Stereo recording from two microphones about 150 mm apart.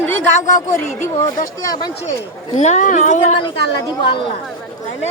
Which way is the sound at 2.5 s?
50° left (ahead or behind).